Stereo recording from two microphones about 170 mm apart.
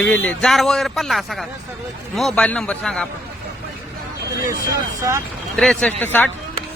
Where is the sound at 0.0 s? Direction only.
10° left (ahead or behind).